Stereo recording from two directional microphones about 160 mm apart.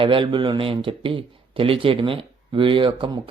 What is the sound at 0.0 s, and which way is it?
Speech, 30° right (ahead or behind).